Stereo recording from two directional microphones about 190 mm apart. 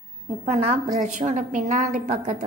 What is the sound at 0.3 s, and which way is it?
A woman's voice, 35° right (ahead or behind).